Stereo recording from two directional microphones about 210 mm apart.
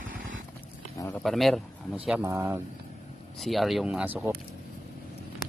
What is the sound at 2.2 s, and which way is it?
Speech, 10° right (ahead or behind).